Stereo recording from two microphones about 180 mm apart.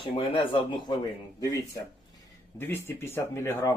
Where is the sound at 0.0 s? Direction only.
30° left (ahead or behind).